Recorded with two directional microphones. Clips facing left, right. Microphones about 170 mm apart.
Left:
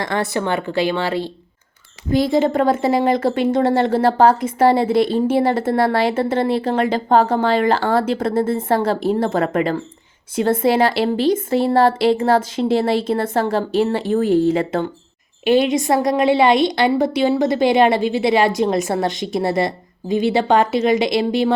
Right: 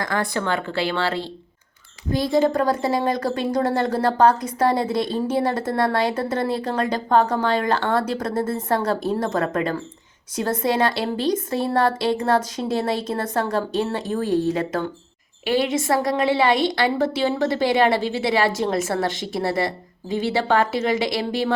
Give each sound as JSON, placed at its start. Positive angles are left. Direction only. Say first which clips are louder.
{"t": 0.0, "sound": "a woman's voice", "louder": "left 3 dB", "side_deg": 25}